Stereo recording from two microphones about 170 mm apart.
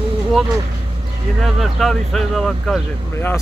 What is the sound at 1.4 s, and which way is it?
Speech, centre (ahead or behind).